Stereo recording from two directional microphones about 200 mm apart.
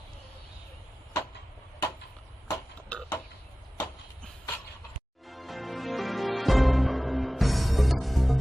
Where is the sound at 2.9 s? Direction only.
5° left (ahead or behind).